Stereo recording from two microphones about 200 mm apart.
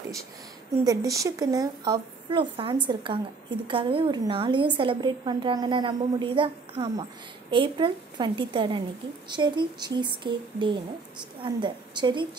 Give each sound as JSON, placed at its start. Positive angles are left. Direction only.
{"t": 0.8, "sound": "a woman's voice", "side_deg": -15}